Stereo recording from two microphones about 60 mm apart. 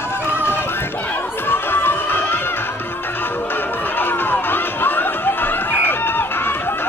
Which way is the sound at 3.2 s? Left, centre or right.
Left.